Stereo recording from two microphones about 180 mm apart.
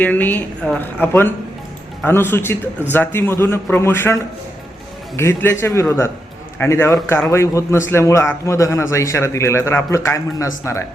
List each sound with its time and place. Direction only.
0.0 s a man's voice: 10° left (ahead or behind)